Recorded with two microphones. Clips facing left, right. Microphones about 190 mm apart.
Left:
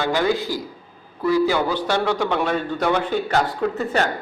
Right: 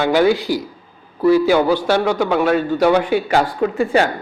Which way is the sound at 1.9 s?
5° right (ahead or behind).